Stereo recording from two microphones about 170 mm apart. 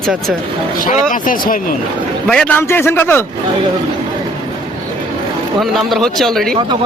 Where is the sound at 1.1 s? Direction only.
50° left (ahead or behind).